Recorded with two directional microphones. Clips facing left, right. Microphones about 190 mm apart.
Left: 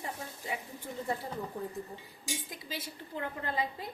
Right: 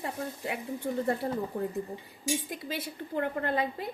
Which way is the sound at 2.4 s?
60° right (ahead or behind).